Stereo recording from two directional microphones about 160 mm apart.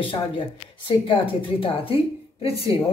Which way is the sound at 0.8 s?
35° left (ahead or behind).